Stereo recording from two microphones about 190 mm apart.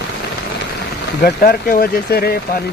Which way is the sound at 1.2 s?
50° left (ahead or behind).